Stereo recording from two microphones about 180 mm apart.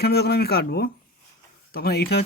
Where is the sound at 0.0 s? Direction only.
60° left (ahead or behind).